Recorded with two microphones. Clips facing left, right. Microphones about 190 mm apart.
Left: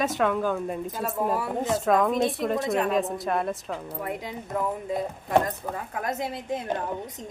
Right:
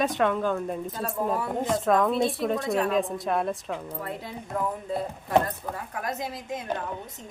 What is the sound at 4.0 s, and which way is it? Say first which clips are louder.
Speech: left 3 dB; 15° left (ahead or behind).